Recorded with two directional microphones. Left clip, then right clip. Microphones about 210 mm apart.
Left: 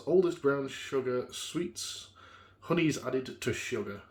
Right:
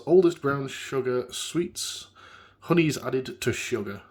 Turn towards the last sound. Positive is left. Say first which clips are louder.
# right 5 dB
turn(degrees=-45)  # may be behind; listen again after turning